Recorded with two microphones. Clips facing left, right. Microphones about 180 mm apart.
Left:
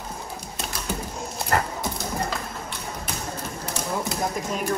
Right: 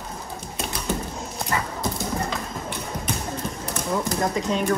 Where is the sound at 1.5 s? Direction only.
65° left (ahead or behind).